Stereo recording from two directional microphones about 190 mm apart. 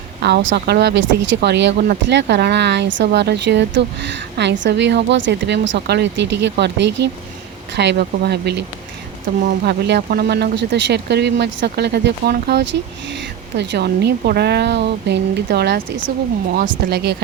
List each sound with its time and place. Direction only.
0.2 s speech: 65° right (ahead or behind)
9.6 s speech: 60° right (ahead or behind)
16.5 s speech: 50° right (ahead or behind)